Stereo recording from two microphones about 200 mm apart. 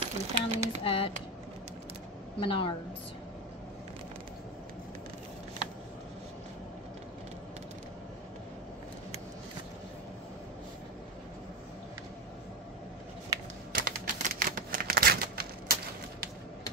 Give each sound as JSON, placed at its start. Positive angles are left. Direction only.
{"t": 0.0, "sound": "speech", "side_deg": -30}
{"t": 0.8, "sound": "speech", "side_deg": 25}
{"t": 2.4, "sound": "speech", "side_deg": 25}
{"t": 13.7, "sound": "a sound", "side_deg": -45}